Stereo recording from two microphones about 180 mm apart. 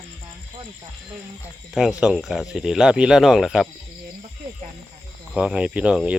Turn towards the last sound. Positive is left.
turn(degrees=-5)  # may be behind; listen again after turning